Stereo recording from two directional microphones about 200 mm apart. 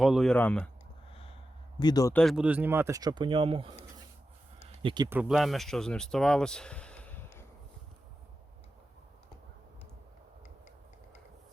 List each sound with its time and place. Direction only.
0.0 s speech: centre (ahead or behind)
1.8 s speech: 20° left (ahead or behind)
2.1 s speech: centre (ahead or behind); by 3.8 s 25° right (ahead or behind)
4.8 s speech: 25° right (ahead or behind)
5.0 s speech: 5° right (ahead or behind)